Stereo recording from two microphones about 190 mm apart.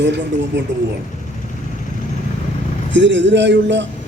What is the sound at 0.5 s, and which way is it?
Speech, 70° right (ahead or behind).